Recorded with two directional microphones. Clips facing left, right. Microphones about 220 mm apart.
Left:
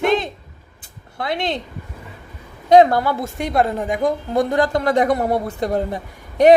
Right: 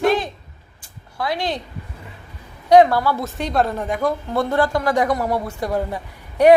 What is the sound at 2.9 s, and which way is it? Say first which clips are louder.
A woman's voice: left 1 dB; 20° left (ahead or behind).